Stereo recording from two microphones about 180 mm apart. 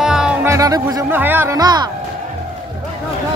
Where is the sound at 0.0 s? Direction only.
5° right (ahead or behind).